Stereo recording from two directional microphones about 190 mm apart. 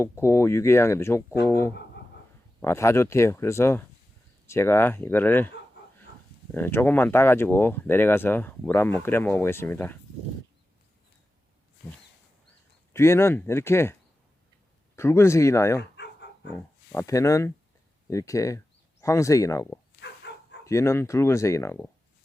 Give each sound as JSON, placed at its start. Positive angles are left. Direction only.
{"t": 0.0, "sound": "speech", "side_deg": 15}
{"t": 6.5, "sound": "speech", "side_deg": 10}
{"t": 12.9, "sound": "speech", "side_deg": 15}
{"t": 14.9, "sound": "speech", "side_deg": 15}
{"t": 15.8, "sound": "dog", "side_deg": 65}
{"t": 16.6, "sound": "speech", "side_deg": 15}
{"t": 20.0, "sound": "bow-wow", "side_deg": 65}
{"t": 20.7, "sound": "speech", "side_deg": 15}